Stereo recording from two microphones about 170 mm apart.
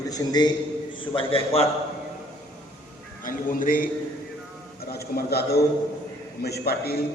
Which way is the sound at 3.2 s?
55° left (ahead or behind).